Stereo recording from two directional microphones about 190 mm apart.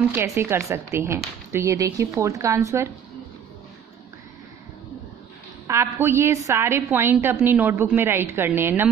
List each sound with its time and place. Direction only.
0.1 s a woman's voice: 15° right (ahead or behind)
5.7 s a woman's voice: 15° right (ahead or behind)